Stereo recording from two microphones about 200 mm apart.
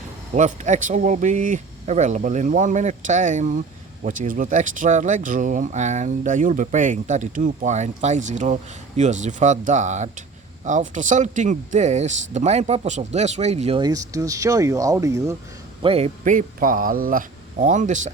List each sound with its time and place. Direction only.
0.3 s speech: 35° right (ahead or behind); by 15.4 s 15° right (ahead or behind)
15.8 s speech: 30° right (ahead or behind)